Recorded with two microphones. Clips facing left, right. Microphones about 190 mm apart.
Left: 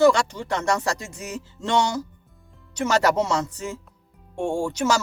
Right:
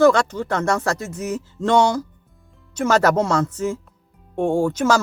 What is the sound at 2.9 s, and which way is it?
Speech, 50° right (ahead or behind).